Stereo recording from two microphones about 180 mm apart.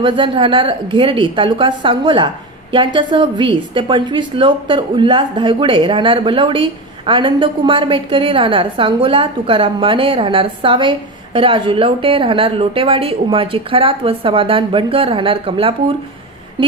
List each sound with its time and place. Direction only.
0.0 s a woman's voice: 30° right (ahead or behind)